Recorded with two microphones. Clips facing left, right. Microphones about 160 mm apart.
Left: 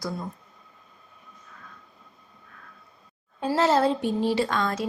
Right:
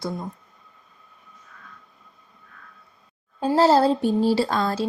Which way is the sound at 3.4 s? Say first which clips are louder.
Right 4 dB; 35° right (ahead or behind).